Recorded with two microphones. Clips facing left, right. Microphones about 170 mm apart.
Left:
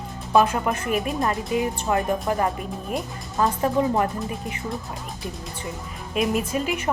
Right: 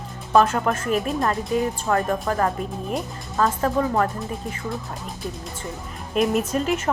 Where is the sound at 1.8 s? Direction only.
15° left (ahead or behind).